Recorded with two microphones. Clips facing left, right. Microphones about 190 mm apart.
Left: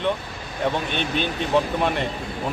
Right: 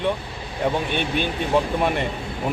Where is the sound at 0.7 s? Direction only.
10° right (ahead or behind).